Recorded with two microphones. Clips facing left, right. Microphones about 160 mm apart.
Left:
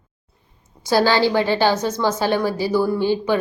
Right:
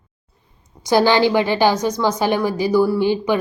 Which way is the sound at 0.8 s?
15° right (ahead or behind).